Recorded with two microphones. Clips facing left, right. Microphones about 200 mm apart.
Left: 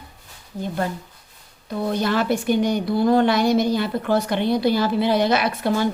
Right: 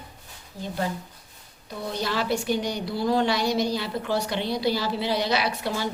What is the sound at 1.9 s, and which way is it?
A woman's voice, 55° left (ahead or behind).